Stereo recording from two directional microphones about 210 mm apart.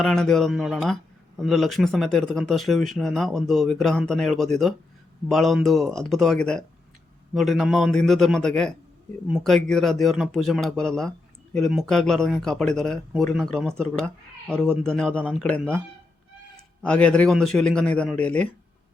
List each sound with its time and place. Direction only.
0.0 s speech: centre (ahead or behind)
16.8 s speech: 5° left (ahead or behind)